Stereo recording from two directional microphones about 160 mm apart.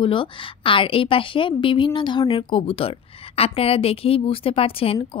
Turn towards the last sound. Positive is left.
turn(degrees=35)  # may be behind; listen again after turning